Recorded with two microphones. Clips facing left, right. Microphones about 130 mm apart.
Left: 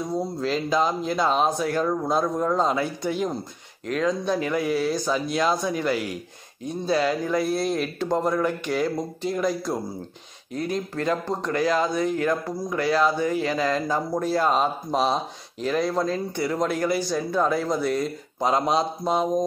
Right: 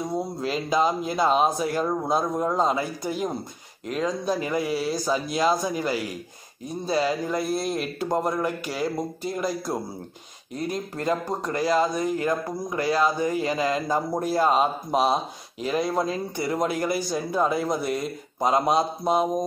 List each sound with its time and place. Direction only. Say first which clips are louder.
0.0 s speech: left 1 dB; 10° right (ahead or behind)
11.1 s speech: right 1 dB; 5° right (ahead or behind)
11.5 s speech: even; 35° right (ahead or behind)
13.6 s speech: even; 10° right (ahead or behind)